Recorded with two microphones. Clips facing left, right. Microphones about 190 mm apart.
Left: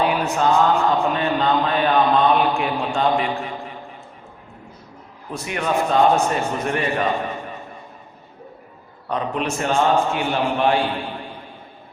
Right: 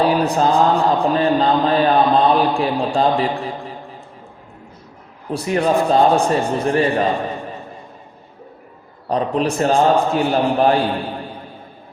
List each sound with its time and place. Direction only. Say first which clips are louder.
0.0 s mantra: right 4 dB; 35° right (ahead or behind)
5.3 s mantra: right 6 dB; 35° right (ahead or behind)
9.0 s mantra: right 5 dB; 35° right (ahead or behind)